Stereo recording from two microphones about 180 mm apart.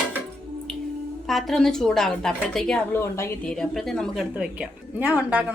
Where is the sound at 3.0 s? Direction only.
15° left (ahead or behind).